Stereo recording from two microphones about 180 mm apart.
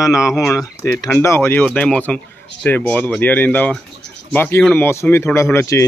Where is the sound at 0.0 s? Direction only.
15° left (ahead or behind).